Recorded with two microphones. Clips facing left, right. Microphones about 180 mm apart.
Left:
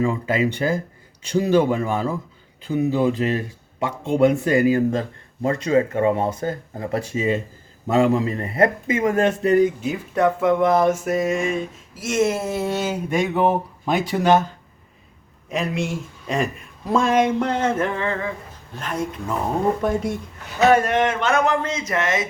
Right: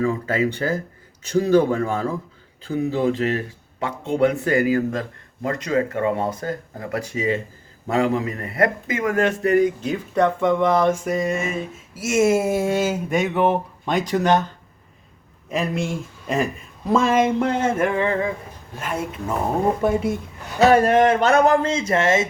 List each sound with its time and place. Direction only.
0.3 s speech: 25° left (ahead or behind)
0.5 s speech: 10° left (ahead or behind)
9.8 s speech: 5° left (ahead or behind)
15.4 s speech: centre (ahead or behind)
20.6 s speech: 35° right (ahead or behind)